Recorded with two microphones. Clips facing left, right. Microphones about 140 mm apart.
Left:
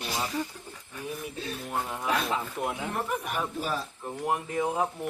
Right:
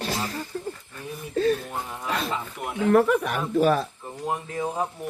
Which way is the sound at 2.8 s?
80° right.